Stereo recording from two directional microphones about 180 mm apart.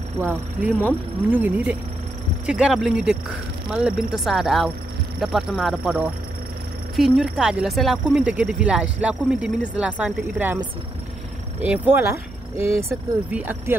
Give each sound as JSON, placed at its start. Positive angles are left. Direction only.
{"t": 0.2, "sound": "speech", "side_deg": -10}
{"t": 11.6, "sound": "speech", "side_deg": -10}
{"t": 12.5, "sound": "speech", "side_deg": 35}
{"t": 13.3, "sound": "speech", "side_deg": -10}